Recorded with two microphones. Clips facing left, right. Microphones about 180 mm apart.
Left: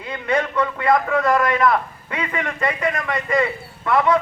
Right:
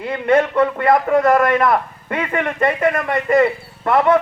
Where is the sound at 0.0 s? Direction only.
55° right (ahead or behind).